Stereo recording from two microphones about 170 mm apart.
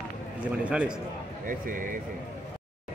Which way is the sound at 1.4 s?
55° right (ahead or behind).